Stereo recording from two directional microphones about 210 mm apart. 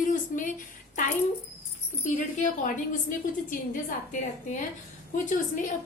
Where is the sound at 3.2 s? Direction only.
40° left (ahead or behind).